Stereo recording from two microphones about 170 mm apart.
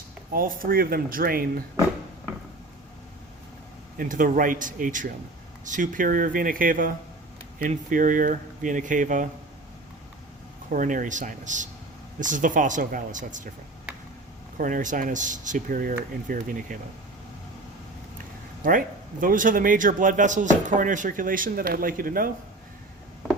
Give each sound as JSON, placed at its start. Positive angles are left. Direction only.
{"t": 0.3, "sound": "speech", "side_deg": -55}
{"t": 3.9, "sound": "speech", "side_deg": -50}
{"t": 10.7, "sound": "speech", "side_deg": -50}
{"t": 14.6, "sound": "speech", "side_deg": -50}
{"t": 18.6, "sound": "speech", "side_deg": -55}